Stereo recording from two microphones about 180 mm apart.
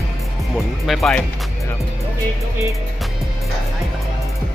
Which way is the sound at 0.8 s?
Centre (ahead or behind).